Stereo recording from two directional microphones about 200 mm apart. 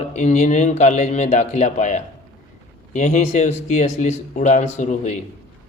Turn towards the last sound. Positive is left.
turn(degrees=35)  # may be behind; listen again after turning